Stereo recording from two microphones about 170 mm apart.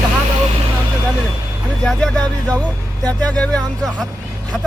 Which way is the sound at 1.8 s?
5° left (ahead or behind).